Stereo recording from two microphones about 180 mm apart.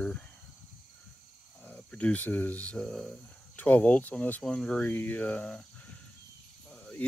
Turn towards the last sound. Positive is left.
turn(degrees=10)  # may be behind; listen again after turning